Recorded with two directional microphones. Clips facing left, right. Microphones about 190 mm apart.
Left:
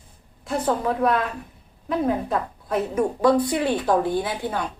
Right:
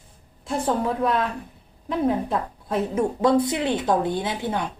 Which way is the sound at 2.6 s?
25° right (ahead or behind).